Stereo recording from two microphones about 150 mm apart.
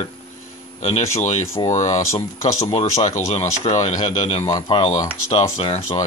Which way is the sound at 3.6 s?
50° left (ahead or behind).